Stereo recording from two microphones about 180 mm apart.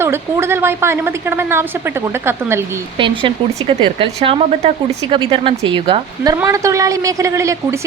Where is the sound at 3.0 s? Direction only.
30° right (ahead or behind).